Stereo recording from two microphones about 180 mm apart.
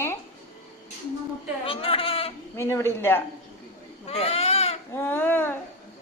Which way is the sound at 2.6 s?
15° left (ahead or behind).